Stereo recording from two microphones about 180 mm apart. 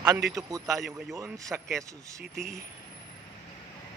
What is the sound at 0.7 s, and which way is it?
Speech, centre (ahead or behind).